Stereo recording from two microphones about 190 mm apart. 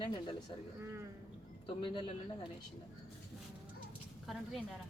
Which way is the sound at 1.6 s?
25° left (ahead or behind).